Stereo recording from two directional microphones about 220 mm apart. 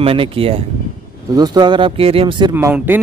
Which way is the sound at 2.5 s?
10° right (ahead or behind).